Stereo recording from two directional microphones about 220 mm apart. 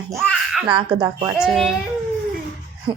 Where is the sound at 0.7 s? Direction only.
20° right (ahead or behind).